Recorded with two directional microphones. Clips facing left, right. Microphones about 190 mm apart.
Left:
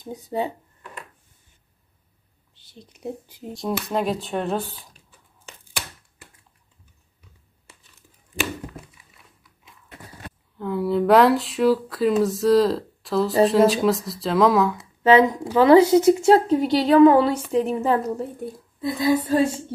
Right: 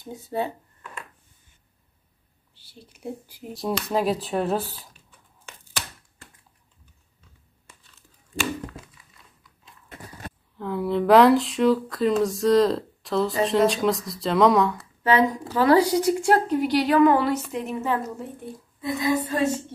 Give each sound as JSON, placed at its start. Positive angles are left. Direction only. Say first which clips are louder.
{"t": 0.0, "sound": "speech", "louder": "left 2 dB", "side_deg": 15}
{"t": 2.5, "sound": "a woman's voice", "louder": "left 2 dB", "side_deg": 20}
{"t": 3.9, "sound": "speech", "louder": "right 2 dB", "side_deg": 0}
{"t": 7.6, "sound": "tearing", "louder": "left 2 dB", "side_deg": 15}
{"t": 10.6, "sound": "speech", "louder": "left 2 dB", "side_deg": 0}
{"t": 14.8, "sound": "a woman's voice", "louder": "left 5 dB", "side_deg": 25}